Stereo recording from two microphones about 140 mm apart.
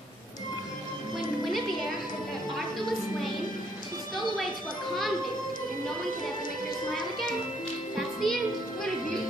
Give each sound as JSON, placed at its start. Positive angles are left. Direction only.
{"t": 1.4, "sound": "music", "side_deg": 0}
{"t": 7.9, "sound": "music", "side_deg": 0}